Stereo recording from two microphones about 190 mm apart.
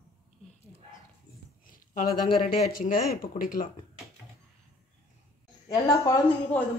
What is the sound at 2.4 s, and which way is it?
Speech, 50° left (ahead or behind).